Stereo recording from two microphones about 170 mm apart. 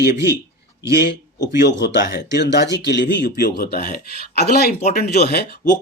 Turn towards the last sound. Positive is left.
turn(degrees=70)  # may be behind; listen again after turning